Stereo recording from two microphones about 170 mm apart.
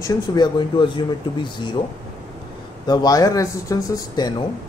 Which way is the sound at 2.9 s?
20° left (ahead or behind).